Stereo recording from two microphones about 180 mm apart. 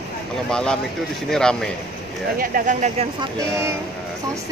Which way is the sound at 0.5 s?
5° left (ahead or behind).